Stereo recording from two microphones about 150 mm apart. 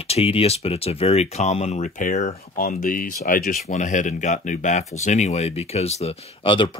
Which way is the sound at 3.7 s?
55° left (ahead or behind).